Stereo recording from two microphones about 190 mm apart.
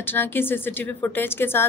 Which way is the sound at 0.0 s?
10° left (ahead or behind).